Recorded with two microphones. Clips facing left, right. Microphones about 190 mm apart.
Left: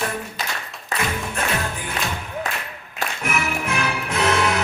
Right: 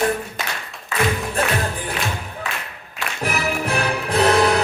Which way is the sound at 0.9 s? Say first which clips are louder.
Right 4 dB; 40° left (ahead or behind).